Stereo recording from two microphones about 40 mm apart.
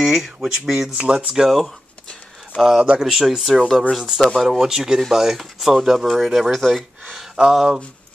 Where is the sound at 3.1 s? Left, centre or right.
Centre.